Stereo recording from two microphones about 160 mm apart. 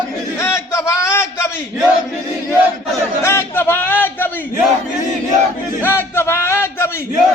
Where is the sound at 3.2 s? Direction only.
15° left (ahead or behind).